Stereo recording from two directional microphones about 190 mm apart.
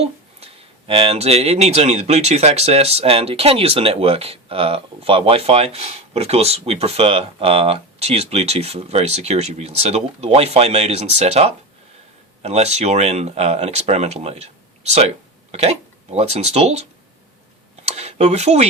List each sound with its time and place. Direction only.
0.0 s speech: 30° right (ahead or behind)
16.1 s speech: 35° right (ahead or behind)
17.8 s tick-tock: 35° right (ahead or behind)